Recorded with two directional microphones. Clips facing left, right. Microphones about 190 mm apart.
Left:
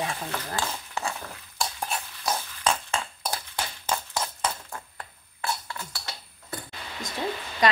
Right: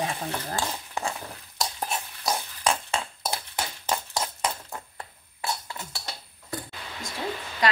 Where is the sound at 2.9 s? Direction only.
15° right (ahead or behind).